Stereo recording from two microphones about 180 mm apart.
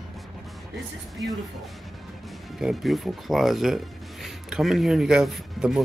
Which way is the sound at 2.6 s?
Centre (ahead or behind).